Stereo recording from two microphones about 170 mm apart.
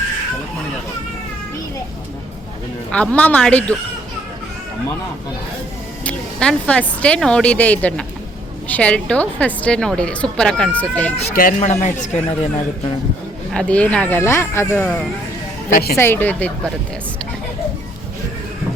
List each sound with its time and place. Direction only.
2.9 s a woman's voice: 5° left (ahead or behind)
6.1 s a woman's voice: 5° left (ahead or behind)
11.3 s speech: 50° left (ahead or behind)
13.5 s a woman's voice: 5° left (ahead or behind)
15.7 s a woman's voice: 65° left (ahead or behind)
16.0 s a woman's voice: 10° left (ahead or behind)